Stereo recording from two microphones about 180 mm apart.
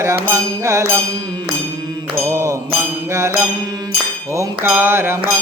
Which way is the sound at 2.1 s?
15° right (ahead or behind).